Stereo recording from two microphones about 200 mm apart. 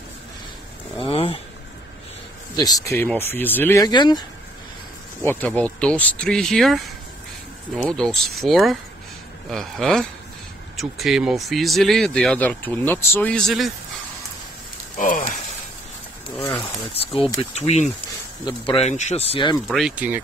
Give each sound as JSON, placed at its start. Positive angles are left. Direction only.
{"t": 0.9, "sound": "a sound", "side_deg": 25}
{"t": 2.5, "sound": "speech", "side_deg": 20}
{"t": 5.2, "sound": "speech", "side_deg": 10}
{"t": 15.0, "sound": "speech", "side_deg": 40}
{"t": 16.3, "sound": "speech", "side_deg": 15}
{"t": 17.4, "sound": "speech", "side_deg": 35}
{"t": 18.4, "sound": "speech", "side_deg": 25}
{"t": 19.7, "sound": "speech", "side_deg": -5}